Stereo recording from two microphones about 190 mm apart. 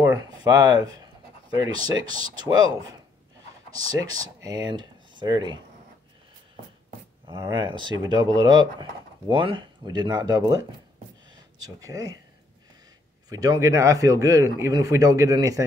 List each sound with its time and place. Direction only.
0.0 s a sound: 20° right (ahead or behind)
0.9 s speech: 20° right (ahead or behind)
3.7 s speech: 20° right (ahead or behind)
7.2 s speech: 20° right (ahead or behind)
11.2 s a sound: 20° right (ahead or behind)
13.3 s speech: 20° right (ahead or behind)